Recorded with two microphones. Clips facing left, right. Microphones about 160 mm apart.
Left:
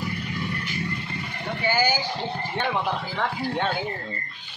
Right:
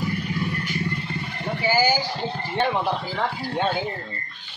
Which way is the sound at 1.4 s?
5° right (ahead or behind).